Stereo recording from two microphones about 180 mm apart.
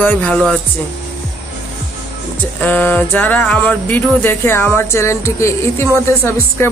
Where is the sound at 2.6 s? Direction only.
10° left (ahead or behind).